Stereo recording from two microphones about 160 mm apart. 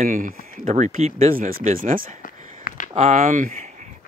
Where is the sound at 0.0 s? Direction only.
60° right (ahead or behind).